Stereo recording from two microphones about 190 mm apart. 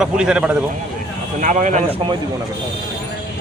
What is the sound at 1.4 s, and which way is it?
Speech, 40° right (ahead or behind).